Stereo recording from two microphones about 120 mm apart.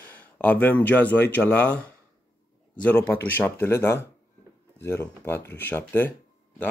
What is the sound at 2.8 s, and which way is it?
Speech, 15° left (ahead or behind).